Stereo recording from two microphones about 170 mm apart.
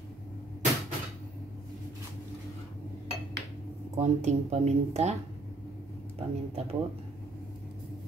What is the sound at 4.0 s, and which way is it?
Speech, 40° right (ahead or behind).